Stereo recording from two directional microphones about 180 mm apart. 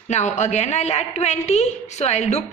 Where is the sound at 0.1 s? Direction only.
40° left (ahead or behind).